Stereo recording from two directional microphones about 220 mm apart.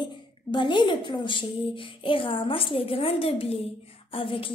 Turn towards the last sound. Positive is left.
turn(degrees=25)  # may be behind; listen again after turning